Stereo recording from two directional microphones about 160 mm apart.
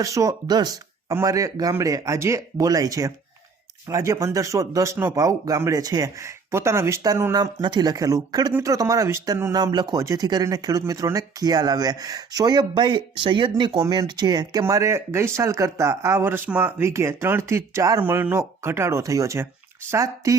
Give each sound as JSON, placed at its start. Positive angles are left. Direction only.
{"t": 0.0, "sound": "speech", "side_deg": -20}